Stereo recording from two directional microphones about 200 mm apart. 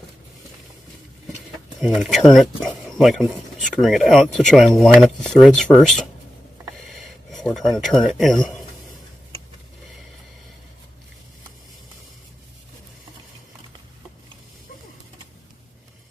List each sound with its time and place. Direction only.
1.8 s speech: centre (ahead or behind)
7.3 s speech: centre (ahead or behind)